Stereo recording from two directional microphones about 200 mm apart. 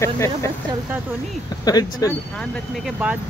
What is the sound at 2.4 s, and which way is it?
Speech, 5° right (ahead or behind).